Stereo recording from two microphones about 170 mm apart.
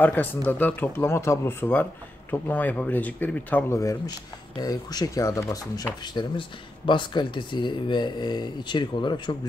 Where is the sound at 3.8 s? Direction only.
20° left (ahead or behind).